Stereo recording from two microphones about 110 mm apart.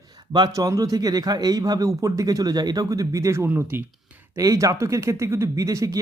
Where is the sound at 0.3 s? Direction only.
35° right (ahead or behind); by 3.8 s 20° right (ahead or behind).